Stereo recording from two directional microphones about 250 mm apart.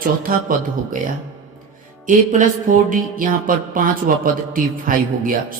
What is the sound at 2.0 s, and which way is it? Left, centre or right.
Music, right.